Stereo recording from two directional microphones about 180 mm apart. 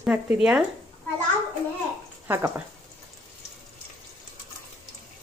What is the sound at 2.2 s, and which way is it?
Speech, 15° right (ahead or behind).